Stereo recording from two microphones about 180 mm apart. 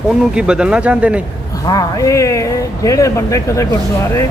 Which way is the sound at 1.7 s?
20° left (ahead or behind).